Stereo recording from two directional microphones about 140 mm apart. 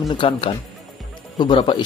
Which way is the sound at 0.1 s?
35° left (ahead or behind).